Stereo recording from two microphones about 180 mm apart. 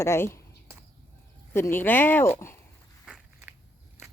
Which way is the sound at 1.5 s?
15° left (ahead or behind).